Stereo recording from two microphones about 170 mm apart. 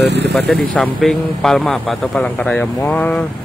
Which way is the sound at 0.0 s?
90° right.